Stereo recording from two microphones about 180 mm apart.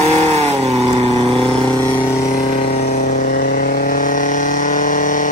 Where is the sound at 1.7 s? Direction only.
25° left (ahead or behind).